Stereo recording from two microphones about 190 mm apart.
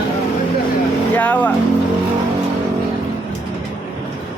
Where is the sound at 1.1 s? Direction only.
10° left (ahead or behind).